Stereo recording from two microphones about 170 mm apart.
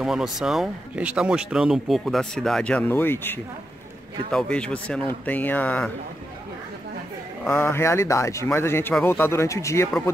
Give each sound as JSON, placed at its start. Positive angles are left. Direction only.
{"t": 0.0, "sound": "speech", "side_deg": -5}
{"t": 7.4, "sound": "speech", "side_deg": 15}